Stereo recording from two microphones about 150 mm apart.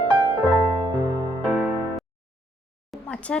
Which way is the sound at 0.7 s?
25° right (ahead or behind).